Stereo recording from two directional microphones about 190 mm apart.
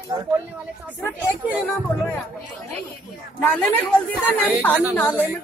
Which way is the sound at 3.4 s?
10° left (ahead or behind).